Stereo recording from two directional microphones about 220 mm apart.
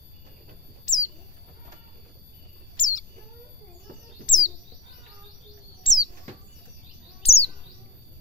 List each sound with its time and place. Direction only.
0.8 s bird: 35° left (ahead or behind)
2.8 s bird: 35° left (ahead or behind)
4.3 s bird: 35° left (ahead or behind)
5.9 s bird: 25° left (ahead or behind)
7.2 s bird: 25° left (ahead or behind)